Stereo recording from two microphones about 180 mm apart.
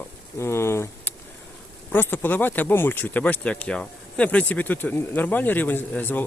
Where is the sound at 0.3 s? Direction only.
15° left (ahead or behind).